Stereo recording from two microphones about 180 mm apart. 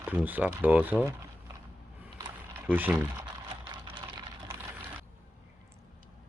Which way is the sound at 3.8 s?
25° right (ahead or behind).